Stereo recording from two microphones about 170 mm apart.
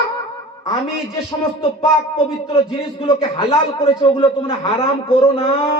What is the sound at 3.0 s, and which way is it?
Speech, 30° left (ahead or behind).